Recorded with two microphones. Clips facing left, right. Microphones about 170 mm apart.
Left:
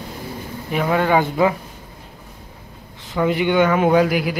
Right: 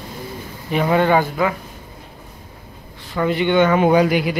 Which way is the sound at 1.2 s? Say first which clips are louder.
Left 2 dB; 25° left (ahead or behind).